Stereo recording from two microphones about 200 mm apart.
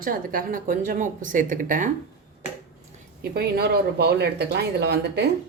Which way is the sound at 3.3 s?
50° right (ahead or behind).